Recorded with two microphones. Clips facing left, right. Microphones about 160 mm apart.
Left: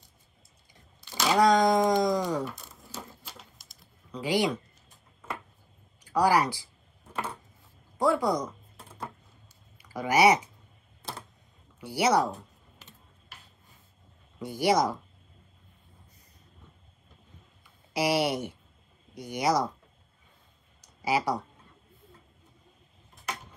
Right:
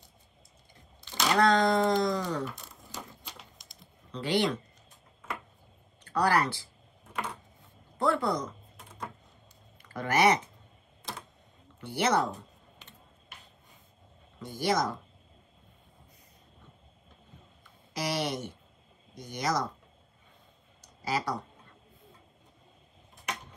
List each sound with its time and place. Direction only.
1.1 s a sound: 5° left (ahead or behind)
1.5 s music: 15° left (ahead or behind)
2.4 s typewriter: centre (ahead or behind)
6.0 s speech: 10° left (ahead or behind)
8.0 s speech: 10° left (ahead or behind)
9.8 s speech: 5° left (ahead or behind)
11.0 s a sound: 30° left (ahead or behind)
11.8 s speech: 10° left (ahead or behind)
14.4 s speech: 10° left (ahead or behind)
17.9 s speech: 10° left (ahead or behind)
21.0 s speech: 10° left (ahead or behind)